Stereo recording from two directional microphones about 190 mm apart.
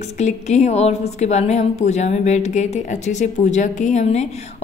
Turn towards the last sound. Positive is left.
turn(degrees=35)  # may be behind; listen again after turning